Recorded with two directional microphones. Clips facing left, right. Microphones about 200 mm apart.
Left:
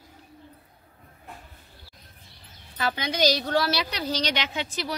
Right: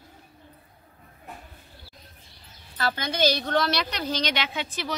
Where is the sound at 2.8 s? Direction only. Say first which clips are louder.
Even; 15° left (ahead or behind).